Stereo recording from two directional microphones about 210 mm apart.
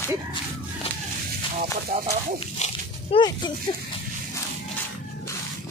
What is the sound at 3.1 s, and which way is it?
Speech, 20° left (ahead or behind).